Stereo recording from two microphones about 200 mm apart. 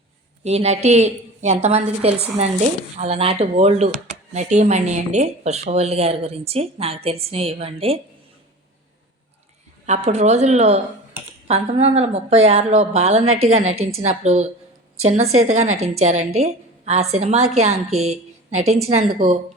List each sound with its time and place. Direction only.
0.4 s a woman's voice: 35° right (ahead or behind)
9.8 s a woman's voice: 35° right (ahead or behind)